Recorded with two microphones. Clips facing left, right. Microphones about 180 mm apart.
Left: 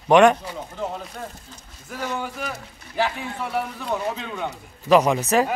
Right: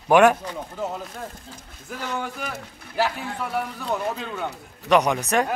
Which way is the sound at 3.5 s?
Centre (ahead or behind).